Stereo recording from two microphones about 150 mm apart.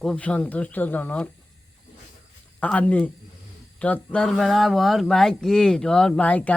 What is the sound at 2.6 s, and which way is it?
A man's voice, 10° left (ahead or behind).